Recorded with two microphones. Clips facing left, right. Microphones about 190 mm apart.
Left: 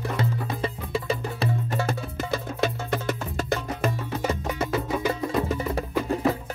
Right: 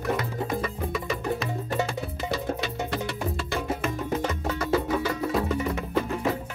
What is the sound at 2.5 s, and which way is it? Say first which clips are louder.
Music: left 5 dB; 45° right (ahead or behind).